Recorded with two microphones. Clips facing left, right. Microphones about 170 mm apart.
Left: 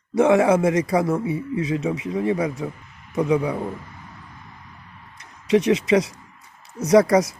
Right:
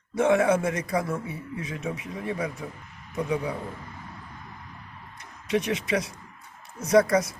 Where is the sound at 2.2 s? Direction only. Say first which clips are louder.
Left 7 dB; 75° left (ahead or behind).